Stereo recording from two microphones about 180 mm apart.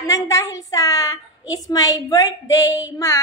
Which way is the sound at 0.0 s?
20° left (ahead or behind).